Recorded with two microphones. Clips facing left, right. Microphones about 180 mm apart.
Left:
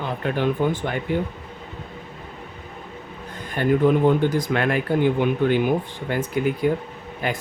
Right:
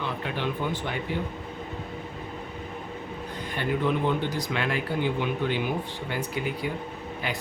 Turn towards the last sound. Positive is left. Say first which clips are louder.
# left 5 dB
turn(degrees=50)  # may be behind; listen again after turning